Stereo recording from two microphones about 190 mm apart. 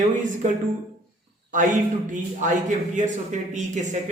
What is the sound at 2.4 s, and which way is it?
Speech, 40° right (ahead or behind).